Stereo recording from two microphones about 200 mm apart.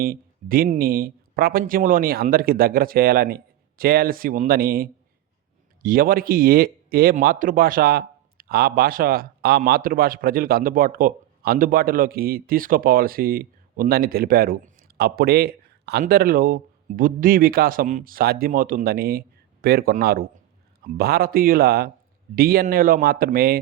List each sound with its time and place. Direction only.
0.0 s speech: 45° right (ahead or behind)